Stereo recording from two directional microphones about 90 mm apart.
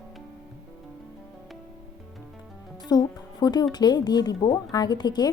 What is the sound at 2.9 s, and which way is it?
A woman's voice, 50° left (ahead or behind).